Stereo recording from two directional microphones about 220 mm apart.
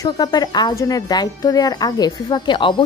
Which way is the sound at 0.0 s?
15° left (ahead or behind).